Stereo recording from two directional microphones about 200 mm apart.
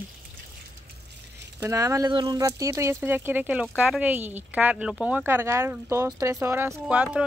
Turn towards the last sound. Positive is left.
turn(degrees=-5)  # may be behind; listen again after turning